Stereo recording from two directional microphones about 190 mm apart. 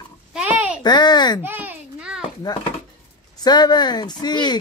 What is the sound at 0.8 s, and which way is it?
Speech, 20° left (ahead or behind).